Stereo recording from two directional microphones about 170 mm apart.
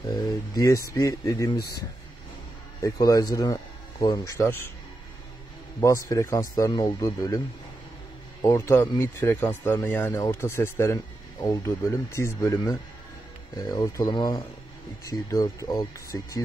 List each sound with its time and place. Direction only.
0.0 s speech: 20° left (ahead or behind)
2.8 s speech: 20° left (ahead or behind)
5.8 s speech: 20° left (ahead or behind)